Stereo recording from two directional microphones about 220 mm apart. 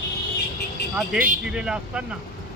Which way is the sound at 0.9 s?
5° right (ahead or behind).